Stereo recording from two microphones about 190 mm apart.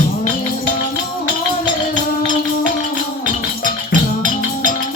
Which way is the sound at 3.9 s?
45° right (ahead or behind).